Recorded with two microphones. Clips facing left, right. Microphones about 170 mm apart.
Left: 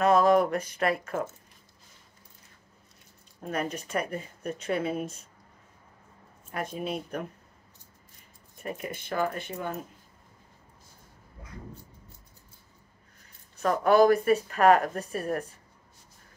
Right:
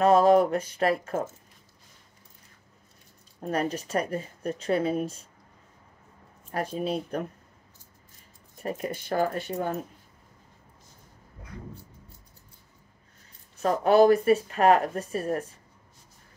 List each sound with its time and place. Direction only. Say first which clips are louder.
0.0 s speech: right 2 dB; 30° right (ahead or behind)
3.3 s speech: right 4 dB; 35° right (ahead or behind)
6.5 s speech: right 4 dB; 35° right (ahead or behind)
8.6 s speech: right 4 dB; 35° right (ahead or behind)
13.6 s speech: right 1 dB; 30° right (ahead or behind)